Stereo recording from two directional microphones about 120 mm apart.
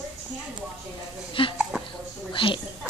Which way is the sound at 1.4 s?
45° left (ahead or behind).